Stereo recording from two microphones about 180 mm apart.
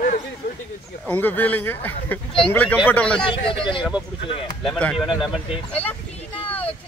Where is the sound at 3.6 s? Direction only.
30° left (ahead or behind).